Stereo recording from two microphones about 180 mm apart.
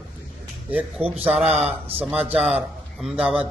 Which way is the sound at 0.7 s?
10° right (ahead or behind).